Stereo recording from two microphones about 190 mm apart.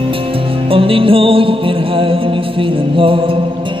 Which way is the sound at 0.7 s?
30° right (ahead or behind).